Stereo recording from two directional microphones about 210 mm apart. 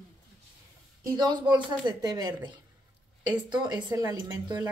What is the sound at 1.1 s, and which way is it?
A woman's voice, 20° right (ahead or behind).